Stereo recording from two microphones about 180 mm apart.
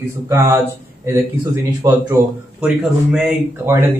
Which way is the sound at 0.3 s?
15° right (ahead or behind).